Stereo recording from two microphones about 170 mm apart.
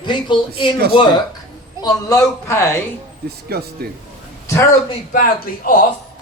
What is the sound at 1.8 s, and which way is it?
Speech, 20° left (ahead or behind).